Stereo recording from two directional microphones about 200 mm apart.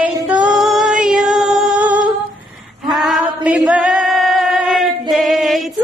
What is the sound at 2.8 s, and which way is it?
Singing, centre (ahead or behind).